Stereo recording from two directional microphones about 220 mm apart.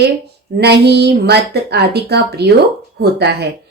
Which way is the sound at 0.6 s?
50° right (ahead or behind).